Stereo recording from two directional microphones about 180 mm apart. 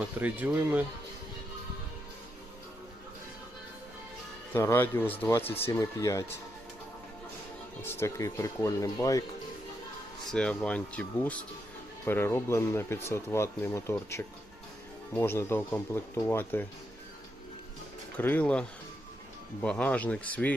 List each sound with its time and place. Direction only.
0.0 s speech: 10° right (ahead or behind)
4.5 s speech: 10° left (ahead or behind)
7.8 s speech: 15° left (ahead or behind)
10.3 s speech: 5° left (ahead or behind)
18.2 s speech: 10° left (ahead or behind)
19.6 s speech: 5° left (ahead or behind)